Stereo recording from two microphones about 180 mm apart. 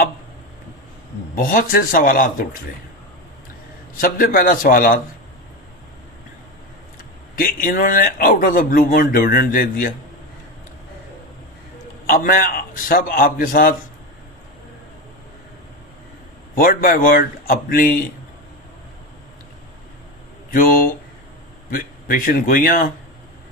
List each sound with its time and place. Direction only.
1.4 s speech: 50° left (ahead or behind)
3.9 s speech: 50° left (ahead or behind)
7.3 s speech: 50° left (ahead or behind)
12.0 s speech: 50° left (ahead or behind)
16.6 s speech: 50° left (ahead or behind)
20.5 s speech: 50° left (ahead or behind)